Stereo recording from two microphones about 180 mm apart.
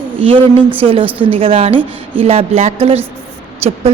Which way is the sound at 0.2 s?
30° right (ahead or behind).